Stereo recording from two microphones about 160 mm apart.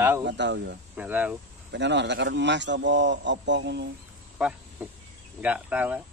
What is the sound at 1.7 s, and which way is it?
A man's voice, 90° right.